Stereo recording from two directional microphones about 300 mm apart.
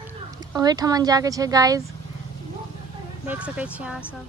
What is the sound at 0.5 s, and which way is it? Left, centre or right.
Speech, centre.